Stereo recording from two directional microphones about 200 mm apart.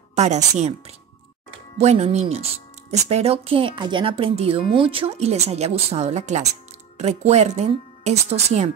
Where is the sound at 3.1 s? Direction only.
30° right (ahead or behind).